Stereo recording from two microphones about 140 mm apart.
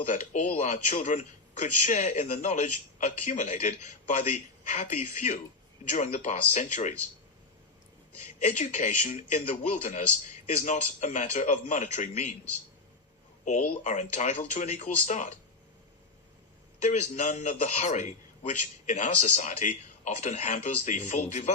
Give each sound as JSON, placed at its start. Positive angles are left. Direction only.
{"t": 0.0, "sound": "a man's voice", "side_deg": 60}
{"t": 8.4, "sound": "a man's voice", "side_deg": 55}
{"t": 13.8, "sound": "a man's voice", "side_deg": 60}
{"t": 16.8, "sound": "a man's voice", "side_deg": 60}